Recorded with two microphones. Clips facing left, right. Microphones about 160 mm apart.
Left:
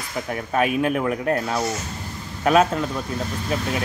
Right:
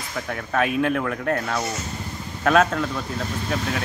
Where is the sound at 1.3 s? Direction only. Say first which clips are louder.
Left 2 dB; 25° left (ahead or behind).